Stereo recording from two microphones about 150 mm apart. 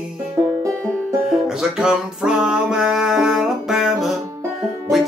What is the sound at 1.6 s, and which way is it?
Music, 5° right (ahead or behind).